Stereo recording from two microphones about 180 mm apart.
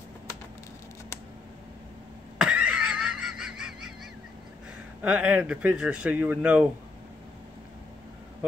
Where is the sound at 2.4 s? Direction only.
5° right (ahead or behind).